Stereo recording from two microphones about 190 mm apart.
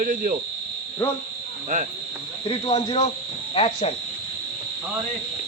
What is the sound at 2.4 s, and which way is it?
Speech, 30° left (ahead or behind).